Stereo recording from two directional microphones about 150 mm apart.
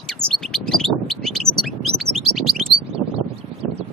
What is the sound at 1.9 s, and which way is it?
Bird, 45° right (ahead or behind).